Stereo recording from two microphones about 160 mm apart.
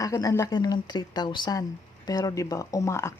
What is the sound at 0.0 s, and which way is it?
Speech, 20° left (ahead or behind).